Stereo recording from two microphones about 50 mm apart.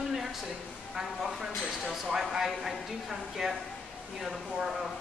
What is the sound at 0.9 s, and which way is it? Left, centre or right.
A man's voice, centre.